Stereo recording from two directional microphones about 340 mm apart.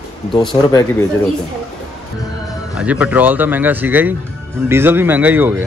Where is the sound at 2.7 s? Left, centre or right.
Centre.